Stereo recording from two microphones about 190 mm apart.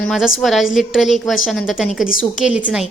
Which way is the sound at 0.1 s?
Centre (ahead or behind).